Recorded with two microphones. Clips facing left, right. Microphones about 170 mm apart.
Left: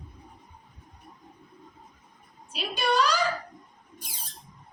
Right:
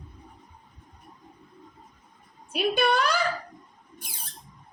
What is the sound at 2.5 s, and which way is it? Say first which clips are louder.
Speech: right 4 dB; 55° right (ahead or behind).